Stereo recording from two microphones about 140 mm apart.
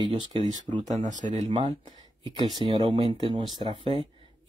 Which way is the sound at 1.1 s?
55° right (ahead or behind).